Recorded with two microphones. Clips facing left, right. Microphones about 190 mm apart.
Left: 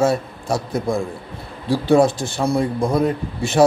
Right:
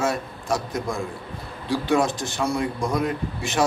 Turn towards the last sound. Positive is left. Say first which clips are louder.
# left 5 dB
turn(degrees=30)  # may be behind; listen again after turning